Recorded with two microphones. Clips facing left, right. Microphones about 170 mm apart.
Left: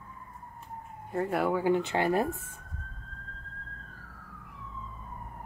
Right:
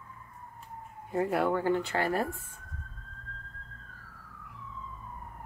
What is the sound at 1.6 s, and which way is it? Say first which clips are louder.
Speech: left 2 dB; 15° left (ahead or behind).